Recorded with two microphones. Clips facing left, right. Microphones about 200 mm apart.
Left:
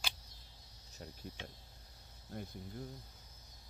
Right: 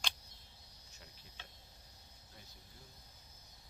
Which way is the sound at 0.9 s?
40° left (ahead or behind).